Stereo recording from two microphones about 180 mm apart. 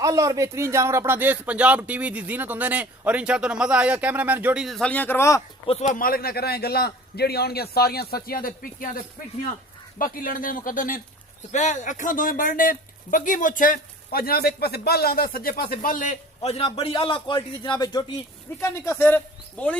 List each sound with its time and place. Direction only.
0.0 s speech: 20° right (ahead or behind); by 5.4 s 15° left (ahead or behind)
5.6 s a man's voice: 30° left (ahead or behind)
5.9 s a man's voice: 55° left (ahead or behind)
10.0 s speech: 50° left (ahead or behind); by 19.7 s 5° left (ahead or behind)